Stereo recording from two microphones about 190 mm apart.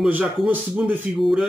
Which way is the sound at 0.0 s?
5° right (ahead or behind).